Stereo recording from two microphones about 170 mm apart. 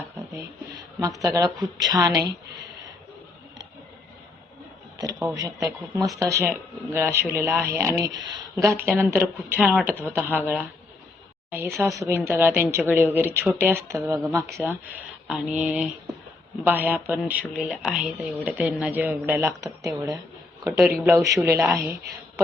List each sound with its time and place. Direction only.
1.2 s a woman's voice: 20° right (ahead or behind)
5.3 s a woman's voice: 20° right (ahead or behind)
20.7 s a woman's voice: 5° right (ahead or behind)